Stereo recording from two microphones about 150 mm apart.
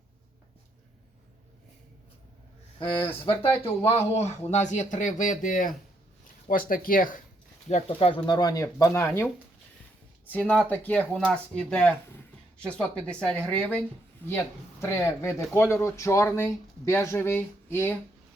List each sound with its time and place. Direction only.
3.0 s speech: 15° left (ahead or behind)
3.8 s speech: 45° left (ahead or behind); by 7.2 s 65° left (ahead or behind)
7.7 s speech: 40° left (ahead or behind); by 17.9 s 15° left (ahead or behind)